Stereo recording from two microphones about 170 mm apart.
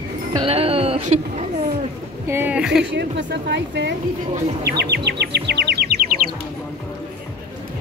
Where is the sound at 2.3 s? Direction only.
10° right (ahead or behind).